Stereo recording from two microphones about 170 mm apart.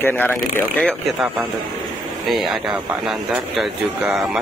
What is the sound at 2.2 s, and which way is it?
Speech, centre (ahead or behind).